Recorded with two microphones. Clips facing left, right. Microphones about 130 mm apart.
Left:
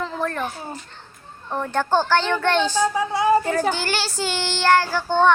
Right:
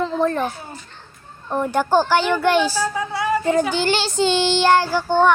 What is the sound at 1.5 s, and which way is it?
Speech, 15° right (ahead or behind).